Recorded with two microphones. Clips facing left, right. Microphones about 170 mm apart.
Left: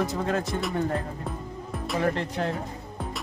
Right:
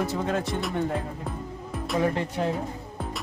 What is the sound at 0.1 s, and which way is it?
Speech, centre (ahead or behind).